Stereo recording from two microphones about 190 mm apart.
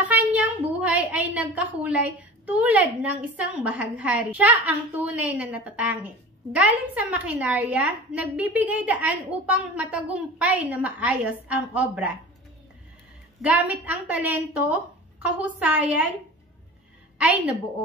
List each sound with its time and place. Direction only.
0.1 s a sound: 10° right (ahead or behind)
0.7 s a woman's voice: 5° right (ahead or behind)
13.4 s a woman's voice: 5° right (ahead or behind)